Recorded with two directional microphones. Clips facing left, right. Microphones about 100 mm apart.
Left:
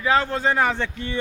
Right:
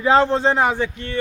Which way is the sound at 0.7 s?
5° right (ahead or behind).